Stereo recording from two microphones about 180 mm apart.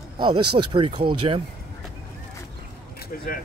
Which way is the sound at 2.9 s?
55° left (ahead or behind).